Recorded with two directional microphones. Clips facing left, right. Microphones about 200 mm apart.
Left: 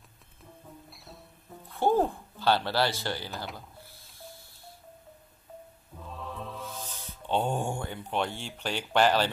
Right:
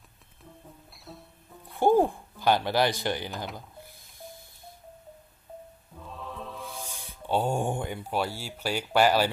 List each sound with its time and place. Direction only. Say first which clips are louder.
0.8 s music: right 3 dB; centre (ahead or behind)
1.7 s speech: right 3 dB; 15° right (ahead or behind)
3.5 s music: right 3 dB; 15° right (ahead or behind)
6.0 s music: even; centre (ahead or behind)
6.6 s music: even; 10° right (ahead or behind)
8.1 s speech: even; 5° right (ahead or behind)